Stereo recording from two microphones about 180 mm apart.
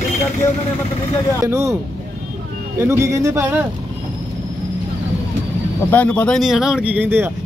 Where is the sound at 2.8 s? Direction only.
15° right (ahead or behind).